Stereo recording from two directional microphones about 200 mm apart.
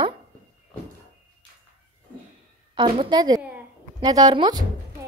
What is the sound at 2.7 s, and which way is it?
A woman's voice, 25° right (ahead or behind).